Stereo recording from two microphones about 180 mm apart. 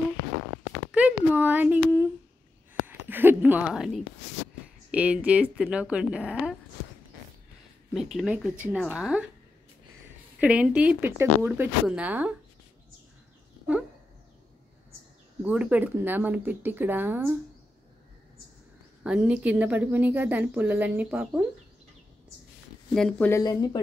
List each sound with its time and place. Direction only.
0.9 s a sound: 10° right (ahead or behind)
3.6 s a woman's voice: centre (ahead or behind)
7.9 s speech: centre (ahead or behind)
10.4 s a woman's voice: 5° right (ahead or behind)
15.4 s a woman's voice: 10° right (ahead or behind)
19.0 s a woman's voice: 5° right (ahead or behind)
22.9 s speech: 5° left (ahead or behind)
23.4 s speech: 20° left (ahead or behind)